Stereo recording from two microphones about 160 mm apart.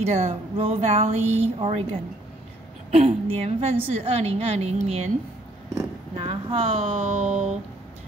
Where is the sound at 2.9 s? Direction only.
40° right (ahead or behind).